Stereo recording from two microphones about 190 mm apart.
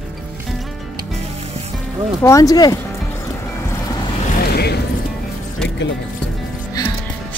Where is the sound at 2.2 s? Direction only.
15° left (ahead or behind).